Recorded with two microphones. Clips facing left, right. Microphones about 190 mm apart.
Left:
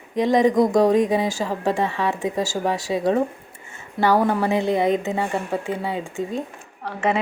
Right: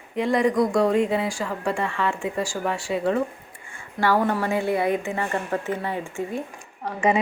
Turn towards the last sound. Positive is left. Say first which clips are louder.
# right 1 dB
turn(degrees=-10)  # may be behind; listen again after turning